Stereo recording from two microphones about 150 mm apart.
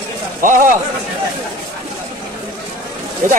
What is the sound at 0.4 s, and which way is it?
Speech, 65° right (ahead or behind).